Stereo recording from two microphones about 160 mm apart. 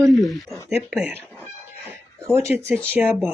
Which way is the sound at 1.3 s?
10° left (ahead or behind).